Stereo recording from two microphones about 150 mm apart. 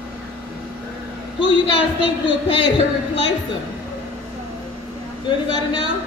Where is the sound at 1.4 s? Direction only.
35° left (ahead or behind).